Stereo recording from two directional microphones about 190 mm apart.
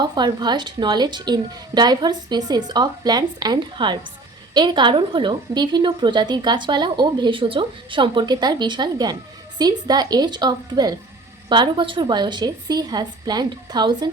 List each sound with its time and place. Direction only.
0.0 s a woman's voice: 20° right (ahead or behind)